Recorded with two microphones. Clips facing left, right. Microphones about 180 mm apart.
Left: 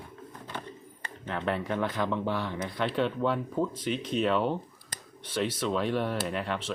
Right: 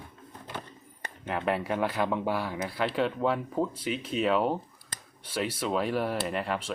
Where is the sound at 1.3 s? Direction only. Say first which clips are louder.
Right 2 dB; 5° right (ahead or behind).